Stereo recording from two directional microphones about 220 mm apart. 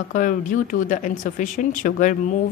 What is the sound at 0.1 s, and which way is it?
A woman's voice, 35° left (ahead or behind).